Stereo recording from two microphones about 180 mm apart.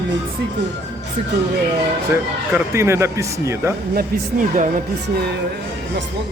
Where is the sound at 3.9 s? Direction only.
45° right (ahead or behind).